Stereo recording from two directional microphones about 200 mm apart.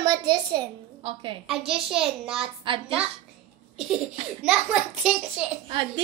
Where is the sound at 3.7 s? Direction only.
5° right (ahead or behind).